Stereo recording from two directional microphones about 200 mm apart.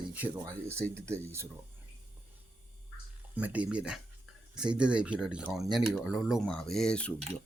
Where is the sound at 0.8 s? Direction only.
5° left (ahead or behind).